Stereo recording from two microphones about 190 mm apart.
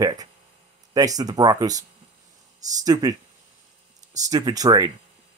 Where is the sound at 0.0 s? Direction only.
20° right (ahead or behind).